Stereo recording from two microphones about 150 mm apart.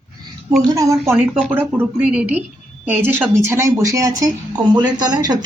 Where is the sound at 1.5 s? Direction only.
10° right (ahead or behind).